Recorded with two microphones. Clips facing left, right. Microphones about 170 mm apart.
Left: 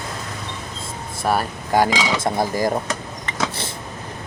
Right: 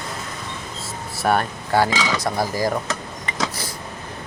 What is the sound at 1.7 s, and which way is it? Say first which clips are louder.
Speech: left 1 dB; 15° left (ahead or behind).